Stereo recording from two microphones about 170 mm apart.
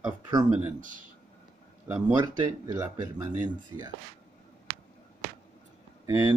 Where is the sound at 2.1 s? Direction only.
25° right (ahead or behind).